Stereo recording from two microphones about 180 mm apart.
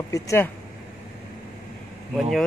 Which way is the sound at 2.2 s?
Centre (ahead or behind).